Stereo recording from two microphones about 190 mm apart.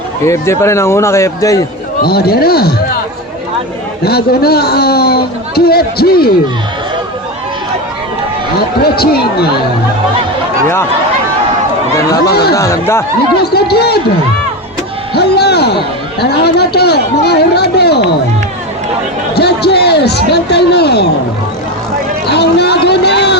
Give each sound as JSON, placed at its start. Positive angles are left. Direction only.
{"t": 0.3, "sound": "a man's voice", "side_deg": 15}
{"t": 2.0, "sound": "a man's voice", "side_deg": 55}
{"t": 4.0, "sound": "a man's voice", "side_deg": 55}
{"t": 8.8, "sound": "a man's voice", "side_deg": 55}
{"t": 12.2, "sound": "a man's voice", "side_deg": 55}
{"t": 12.5, "sound": "a man's voice", "side_deg": 15}
{"t": 13.3, "sound": "a man's voice", "side_deg": 55}
{"t": 15.1, "sound": "a sound", "side_deg": 60}
{"t": 16.2, "sound": "a man's voice", "side_deg": 60}
{"t": 19.3, "sound": "a man's voice", "side_deg": 60}
{"t": 22.3, "sound": "a sound", "side_deg": 60}